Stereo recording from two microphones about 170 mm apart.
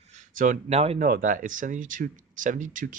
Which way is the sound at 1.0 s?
50° right (ahead or behind).